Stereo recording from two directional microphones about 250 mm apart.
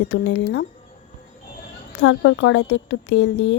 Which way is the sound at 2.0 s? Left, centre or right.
Left.